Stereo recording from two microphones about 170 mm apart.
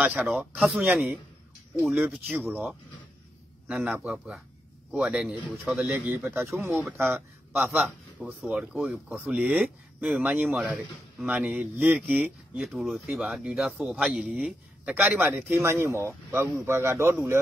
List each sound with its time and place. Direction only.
0.0 s a man's voice: 10° right (ahead or behind)
3.6 s a man's voice: 10° right (ahead or behind)
6.6 s a man's voice: centre (ahead or behind)
7.0 s speech: 10° right (ahead or behind)